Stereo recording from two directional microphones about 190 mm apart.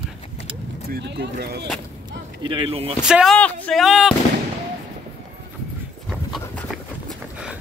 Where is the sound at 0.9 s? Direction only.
65° right (ahead or behind).